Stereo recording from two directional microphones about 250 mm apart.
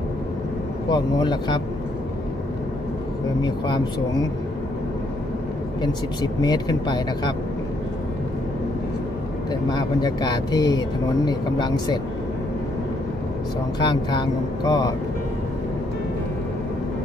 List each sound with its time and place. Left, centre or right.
0.8 s speech: centre
3.4 s speech: centre
5.8 s speech: centre
9.5 s speech: centre
13.7 s speech: centre